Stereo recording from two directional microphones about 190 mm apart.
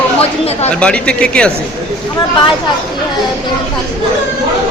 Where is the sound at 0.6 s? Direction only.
5° left (ahead or behind).